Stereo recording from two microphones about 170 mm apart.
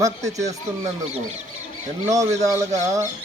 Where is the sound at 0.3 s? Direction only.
40° right (ahead or behind).